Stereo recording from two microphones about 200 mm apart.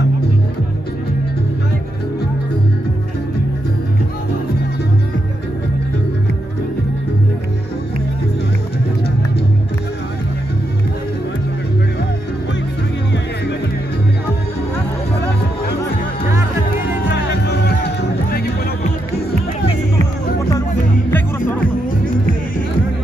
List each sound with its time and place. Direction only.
17.1 s music: 55° left (ahead or behind)
21.1 s music: 10° left (ahead or behind)